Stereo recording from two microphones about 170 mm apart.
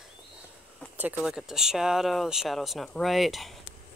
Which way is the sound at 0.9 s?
5° right (ahead or behind).